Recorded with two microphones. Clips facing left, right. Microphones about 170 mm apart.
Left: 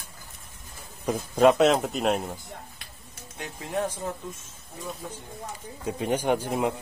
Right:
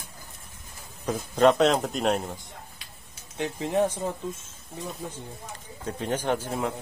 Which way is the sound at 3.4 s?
20° right (ahead or behind).